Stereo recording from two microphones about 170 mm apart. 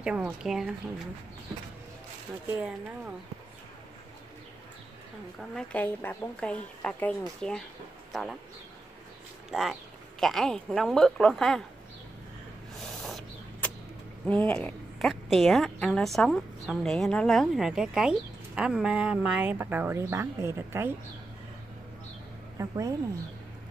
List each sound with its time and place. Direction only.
0.0 s a woman's voice: 5° right (ahead or behind)
5.6 s a woman's voice: 10° left (ahead or behind)
9.5 s a woman's voice: centre (ahead or behind)
12.7 s a sound: centre (ahead or behind)
14.2 s a woman's voice: 5° left (ahead or behind); by 20.9 s 15° right (ahead or behind)
22.6 s a woman's voice: 20° right (ahead or behind)